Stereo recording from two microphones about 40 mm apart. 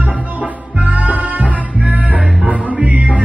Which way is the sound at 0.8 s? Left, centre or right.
Right.